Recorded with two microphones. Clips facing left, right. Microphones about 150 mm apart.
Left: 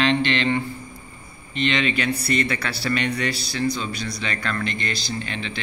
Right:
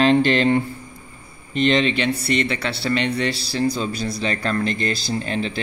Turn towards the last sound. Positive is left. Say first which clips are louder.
# right 6 dB
turn(degrees=-40)  # may be behind; listen again after turning